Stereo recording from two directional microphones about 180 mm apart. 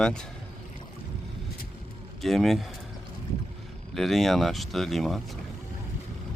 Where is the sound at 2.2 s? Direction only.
Centre (ahead or behind).